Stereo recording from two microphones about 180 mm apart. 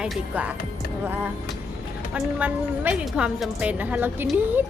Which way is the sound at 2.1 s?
10° right (ahead or behind).